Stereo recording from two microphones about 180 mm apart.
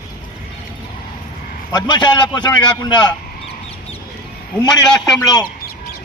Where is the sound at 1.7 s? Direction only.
25° left (ahead or behind).